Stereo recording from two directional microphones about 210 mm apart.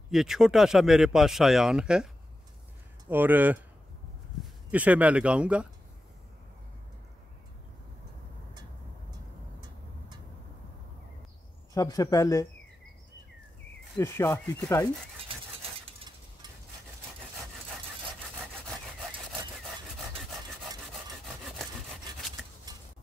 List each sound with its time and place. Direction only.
0.1 s speech: centre (ahead or behind)
3.1 s speech: 10° right (ahead or behind)
11.7 s speech: 15° left (ahead or behind)
13.9 s speech: 10° left (ahead or behind)